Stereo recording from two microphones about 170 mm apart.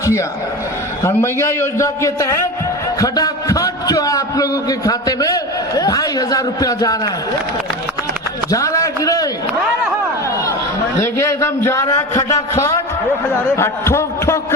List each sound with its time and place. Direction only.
0.0 s a man's voice: 15° left (ahead or behind)
8.4 s a man's voice: 20° left (ahead or behind)
10.9 s a man's voice: 15° left (ahead or behind)